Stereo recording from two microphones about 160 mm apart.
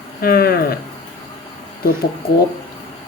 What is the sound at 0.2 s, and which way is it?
Speech, 70° left (ahead or behind).